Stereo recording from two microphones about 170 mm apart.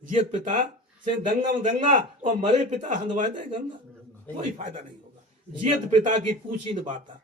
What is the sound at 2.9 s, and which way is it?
Speech, 50° right (ahead or behind).